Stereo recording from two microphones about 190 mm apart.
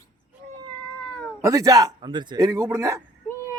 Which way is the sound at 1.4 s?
20° right (ahead or behind).